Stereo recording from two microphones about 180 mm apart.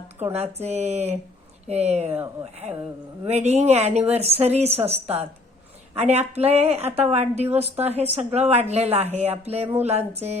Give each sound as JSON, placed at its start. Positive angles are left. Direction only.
{"t": 0.3, "sound": "speech", "side_deg": -35}
{"t": 3.2, "sound": "speech", "side_deg": -35}